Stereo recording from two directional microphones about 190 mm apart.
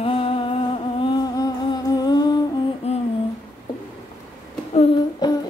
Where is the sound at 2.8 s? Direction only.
35° left (ahead or behind).